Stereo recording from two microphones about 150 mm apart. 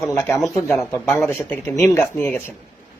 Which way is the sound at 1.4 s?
15° left (ahead or behind).